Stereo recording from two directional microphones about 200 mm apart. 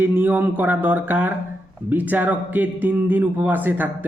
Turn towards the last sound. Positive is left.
turn(degrees=-10)  # may be behind; listen again after turning